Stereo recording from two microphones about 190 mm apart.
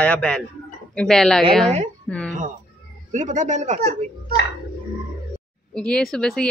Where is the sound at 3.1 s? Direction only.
40° right (ahead or behind).